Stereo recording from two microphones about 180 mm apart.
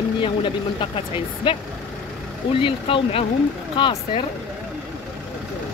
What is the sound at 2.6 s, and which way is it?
Speech, 30° left (ahead or behind).